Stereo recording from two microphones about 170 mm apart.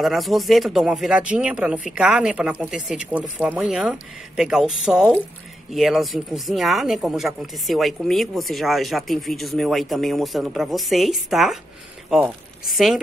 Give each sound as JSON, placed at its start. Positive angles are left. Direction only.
{"t": 0.0, "sound": "speech", "side_deg": 0}